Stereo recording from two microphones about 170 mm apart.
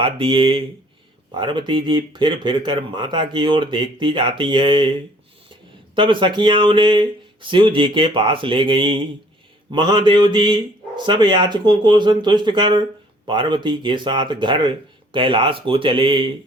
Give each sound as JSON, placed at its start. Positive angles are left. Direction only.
{"t": 0.0, "sound": "speech", "side_deg": -30}